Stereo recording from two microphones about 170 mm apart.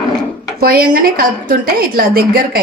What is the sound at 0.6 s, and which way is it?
A woman's voice, 60° right (ahead or behind).